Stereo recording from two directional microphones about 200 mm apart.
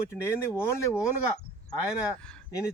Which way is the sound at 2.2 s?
5° left (ahead or behind).